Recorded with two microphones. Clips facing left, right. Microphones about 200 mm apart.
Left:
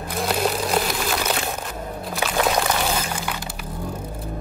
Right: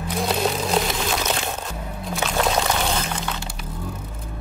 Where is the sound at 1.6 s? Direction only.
5° left (ahead or behind).